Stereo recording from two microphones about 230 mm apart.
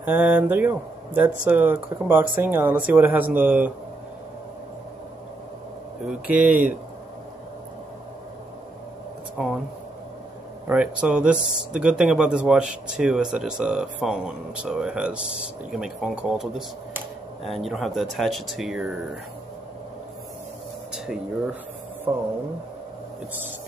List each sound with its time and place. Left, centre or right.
0.0 s speech: centre
6.2 s speech: centre
10.7 s speech: centre
22.1 s speech: centre